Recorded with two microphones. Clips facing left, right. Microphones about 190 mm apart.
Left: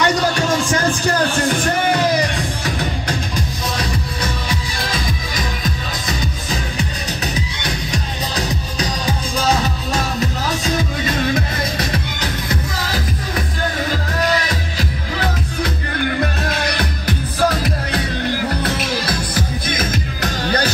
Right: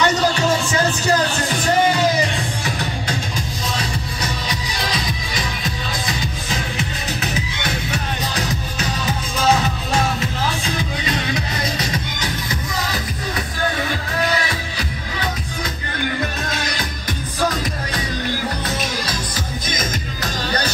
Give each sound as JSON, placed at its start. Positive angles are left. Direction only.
{"t": 0.0, "sound": "music", "side_deg": 55}
{"t": 7.9, "sound": "music", "side_deg": 35}
{"t": 11.1, "sound": "music", "side_deg": 50}
{"t": 19.0, "sound": "music", "side_deg": 60}